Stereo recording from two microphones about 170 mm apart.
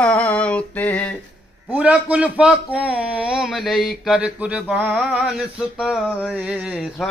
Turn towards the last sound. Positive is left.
turn(degrees=-5)  # may be behind; listen again after turning